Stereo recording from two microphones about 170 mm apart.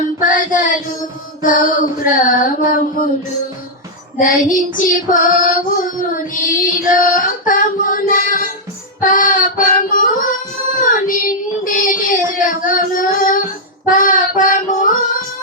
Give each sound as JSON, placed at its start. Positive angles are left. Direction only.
{"t": 0.2, "sound": "a sound", "side_deg": 55}
{"t": 1.4, "sound": "child singing", "side_deg": 55}
{"t": 4.2, "sound": "child singing", "side_deg": 50}